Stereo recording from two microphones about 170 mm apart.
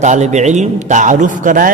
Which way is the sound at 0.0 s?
45° right (ahead or behind).